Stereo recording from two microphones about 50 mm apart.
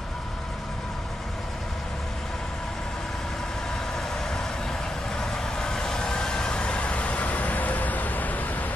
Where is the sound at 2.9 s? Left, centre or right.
Centre.